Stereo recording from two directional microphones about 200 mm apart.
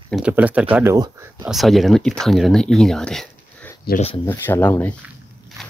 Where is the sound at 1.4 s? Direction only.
Centre (ahead or behind).